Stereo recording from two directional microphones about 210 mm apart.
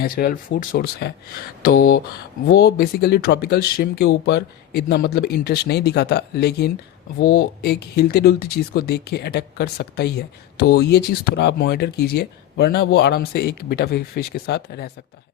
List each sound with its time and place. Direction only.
0.0 s speech: 45° left (ahead or behind)